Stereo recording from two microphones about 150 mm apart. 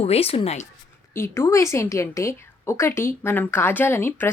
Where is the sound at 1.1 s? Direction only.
15° left (ahead or behind).